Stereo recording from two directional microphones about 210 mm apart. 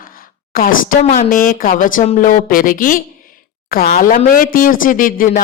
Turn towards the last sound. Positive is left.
turn(degrees=40)  # may be behind; listen again after turning